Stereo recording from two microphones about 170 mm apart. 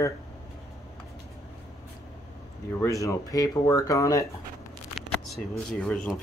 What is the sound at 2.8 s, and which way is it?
Speech, 20° left (ahead or behind).